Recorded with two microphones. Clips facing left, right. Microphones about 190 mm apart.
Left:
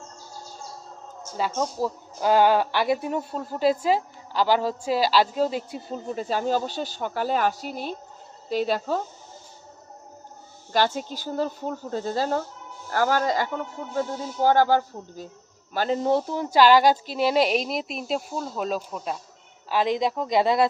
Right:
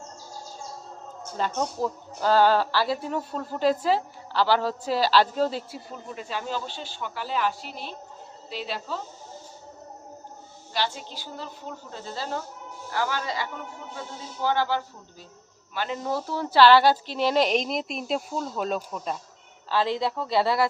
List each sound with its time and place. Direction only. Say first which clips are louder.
1.4 s a woman's voice: left 1 dB; 10° left (ahead or behind)
5.9 s speech: left 7 dB; 40° left (ahead or behind)
10.7 s speech: left 7 dB; 45° left (ahead or behind)
16.0 s a woman's voice: left 5 dB; 20° left (ahead or behind); by 19.1 s 5° left (ahead or behind)
19.6 s a woman's voice: left 2 dB; 15° left (ahead or behind)